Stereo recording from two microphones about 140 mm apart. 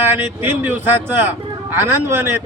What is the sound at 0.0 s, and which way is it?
A man's voice, 15° right (ahead or behind).